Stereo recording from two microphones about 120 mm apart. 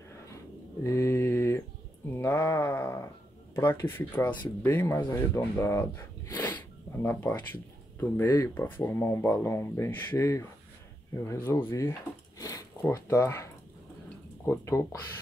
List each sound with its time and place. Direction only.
0.8 s mantra: 25° left (ahead or behind)
2.1 s speech: 20° left (ahead or behind)
6.5 s a sound: 15° left (ahead or behind)
8.0 s speech: 20° left (ahead or behind)
12.4 s a sound: 30° left (ahead or behind)
12.9 s speech: 20° left (ahead or behind)